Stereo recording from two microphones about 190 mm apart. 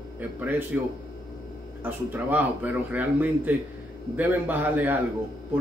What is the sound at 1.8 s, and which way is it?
A man's voice, 10° right (ahead or behind).